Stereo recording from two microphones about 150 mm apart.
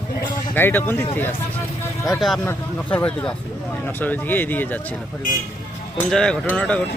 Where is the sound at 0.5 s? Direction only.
15° left (ahead or behind).